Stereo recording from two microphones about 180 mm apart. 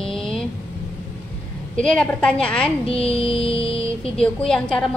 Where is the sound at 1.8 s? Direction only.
5° left (ahead or behind).